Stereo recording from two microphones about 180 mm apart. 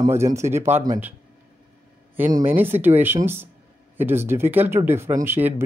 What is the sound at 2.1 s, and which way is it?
Speech, 10° right (ahead or behind).